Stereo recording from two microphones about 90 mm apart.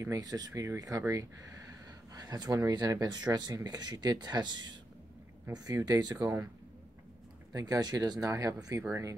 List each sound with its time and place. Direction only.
0.0 s speech: 40° right (ahead or behind)
7.5 s speech: 45° right (ahead or behind)